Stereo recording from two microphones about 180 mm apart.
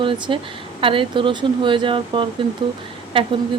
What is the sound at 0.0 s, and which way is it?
Speech, 30° right (ahead or behind).